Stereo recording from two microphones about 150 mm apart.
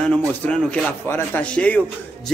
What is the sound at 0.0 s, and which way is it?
A man's voice, 10° left (ahead or behind).